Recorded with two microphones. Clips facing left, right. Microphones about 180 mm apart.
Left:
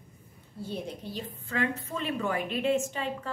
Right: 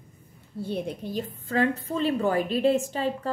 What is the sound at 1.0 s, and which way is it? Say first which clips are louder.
Speech: right 6 dB; 50° right (ahead or behind).